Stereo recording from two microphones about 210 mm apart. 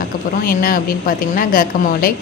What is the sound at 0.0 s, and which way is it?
A woman's voice, 45° left (ahead or behind).